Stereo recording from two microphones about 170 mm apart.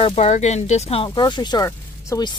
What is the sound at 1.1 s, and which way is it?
Speech, 25° left (ahead or behind).